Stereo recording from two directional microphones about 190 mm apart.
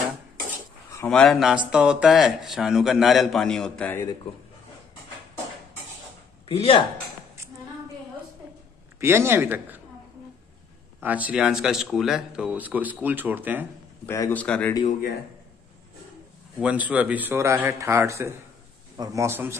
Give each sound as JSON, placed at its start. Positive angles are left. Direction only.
{"t": 0.9, "sound": "speech", "side_deg": 5}
{"t": 6.5, "sound": "speech", "side_deg": 30}
{"t": 9.0, "sound": "speech", "side_deg": -10}
{"t": 11.0, "sound": "speech", "side_deg": -10}
{"t": 14.0, "sound": "a man's voice", "side_deg": 15}
{"t": 16.5, "sound": "speech", "side_deg": -5}